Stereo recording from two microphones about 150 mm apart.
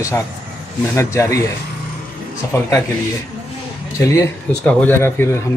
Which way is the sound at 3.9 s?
20° left (ahead or behind).